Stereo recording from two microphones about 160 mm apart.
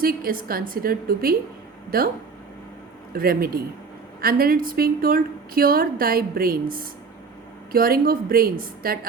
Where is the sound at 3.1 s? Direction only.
65° right (ahead or behind).